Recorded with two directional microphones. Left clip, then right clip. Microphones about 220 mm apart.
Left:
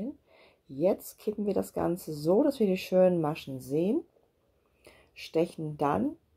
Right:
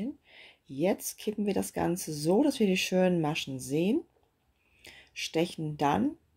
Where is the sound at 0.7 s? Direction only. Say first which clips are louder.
Left 2 dB; 25° right (ahead or behind).